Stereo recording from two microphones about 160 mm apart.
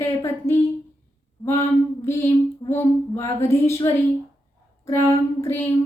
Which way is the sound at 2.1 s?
20° left (ahead or behind).